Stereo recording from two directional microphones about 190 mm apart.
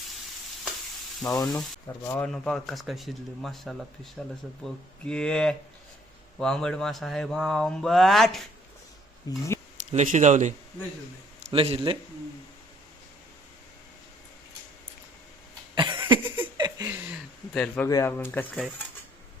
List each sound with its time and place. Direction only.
1.3 s speech: 20° left (ahead or behind); by 8.4 s centre (ahead or behind)
9.3 s speech: 20° left (ahead or behind)
9.9 s a man's voice: 40° right (ahead or behind)
15.7 s cough: 25° right (ahead or behind)
16.6 s a sound: 20° right (ahead or behind)
17.5 s speech: 5° left (ahead or behind)